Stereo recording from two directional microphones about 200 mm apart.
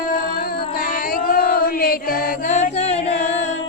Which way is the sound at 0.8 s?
45° left (ahead or behind).